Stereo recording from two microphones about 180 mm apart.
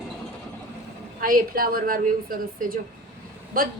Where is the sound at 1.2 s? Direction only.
50° right (ahead or behind).